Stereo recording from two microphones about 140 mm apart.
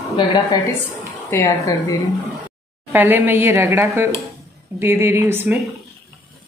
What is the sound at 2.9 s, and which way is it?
A woman's voice, 15° right (ahead or behind).